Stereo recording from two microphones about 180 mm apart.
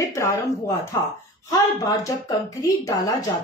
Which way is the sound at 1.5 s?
20° left (ahead or behind).